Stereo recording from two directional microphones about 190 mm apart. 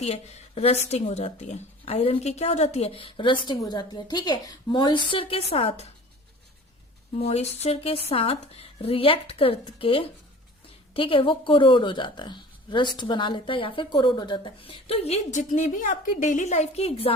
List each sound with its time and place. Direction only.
0.0 s a woman's voice: 35° left (ahead or behind)
7.2 s a woman's voice: 35° left (ahead or behind)